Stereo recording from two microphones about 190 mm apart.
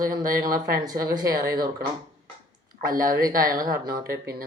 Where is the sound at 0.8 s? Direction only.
20° right (ahead or behind).